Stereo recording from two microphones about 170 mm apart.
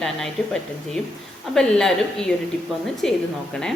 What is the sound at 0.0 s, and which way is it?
A woman's voice, centre (ahead or behind).